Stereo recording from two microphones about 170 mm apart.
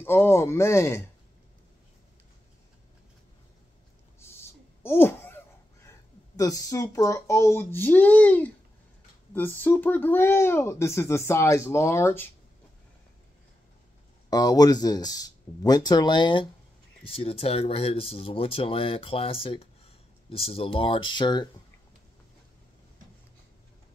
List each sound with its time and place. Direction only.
0.0 s speech: 15° left (ahead or behind)
4.2 s a sound: 15° left (ahead or behind)
9.3 s speech: 10° left (ahead or behind)
14.3 s speech: 25° left (ahead or behind)